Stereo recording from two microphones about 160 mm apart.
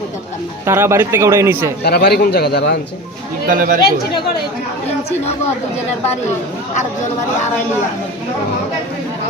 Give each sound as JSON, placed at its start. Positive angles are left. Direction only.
{"t": 0.6, "sound": "speech", "side_deg": -15}
{"t": 1.8, "sound": "a man's voice", "side_deg": 90}
{"t": 3.5, "sound": "speech", "side_deg": -60}